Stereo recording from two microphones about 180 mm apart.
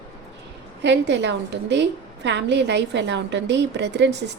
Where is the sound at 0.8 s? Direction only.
75° right (ahead or behind).